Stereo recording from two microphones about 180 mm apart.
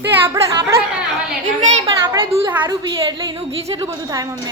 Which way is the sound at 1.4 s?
40° right (ahead or behind).